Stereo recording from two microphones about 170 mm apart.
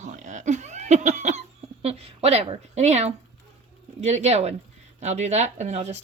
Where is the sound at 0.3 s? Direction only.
45° right (ahead or behind).